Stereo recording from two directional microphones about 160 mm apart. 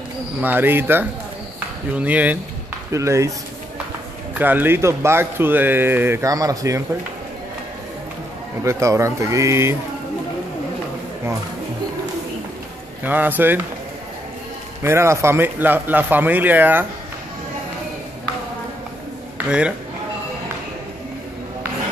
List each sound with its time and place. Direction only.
0.4 s speech: 10° right (ahead or behind)
4.4 s speech: 10° right (ahead or behind)
8.6 s speech: 20° right (ahead or behind)
13.0 s speech: 10° right (ahead or behind)
14.8 s speech: 15° right (ahead or behind)
19.3 s a man's voice: 5° right (ahead or behind)